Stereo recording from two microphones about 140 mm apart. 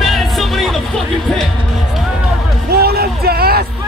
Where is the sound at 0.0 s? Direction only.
Centre (ahead or behind).